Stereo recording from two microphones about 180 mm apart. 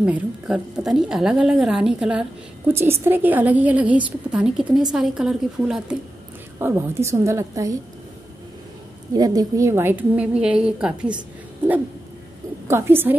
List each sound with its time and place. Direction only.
0.0 s a woman's voice: 5° right (ahead or behind)
6.6 s a woman's voice: 15° right (ahead or behind)
9.1 s a woman's voice: 20° right (ahead or behind); by 11.1 s 5° right (ahead or behind)
12.6 s a woman's voice: 15° right (ahead or behind)